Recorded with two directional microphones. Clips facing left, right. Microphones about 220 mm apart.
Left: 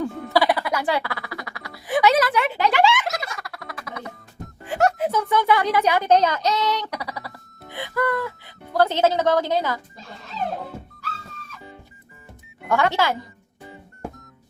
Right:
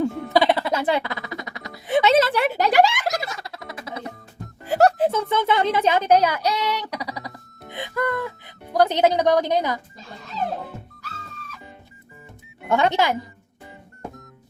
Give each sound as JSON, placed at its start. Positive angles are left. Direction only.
{"t": 0.0, "sound": "a sound", "side_deg": -20}
{"t": 2.4, "sound": "speech", "side_deg": -40}
{"t": 3.2, "sound": "music", "side_deg": -20}
{"t": 6.1, "sound": "speech", "side_deg": -10}
{"t": 12.6, "sound": "speech", "side_deg": -20}